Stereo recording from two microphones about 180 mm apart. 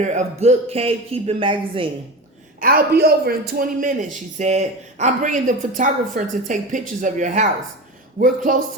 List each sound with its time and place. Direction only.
0.0 s speech: 40° right (ahead or behind)
2.6 s a man's voice: 55° right (ahead or behind)